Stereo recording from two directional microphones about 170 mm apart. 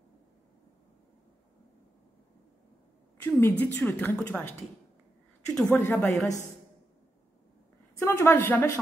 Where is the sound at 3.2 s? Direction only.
10° left (ahead or behind).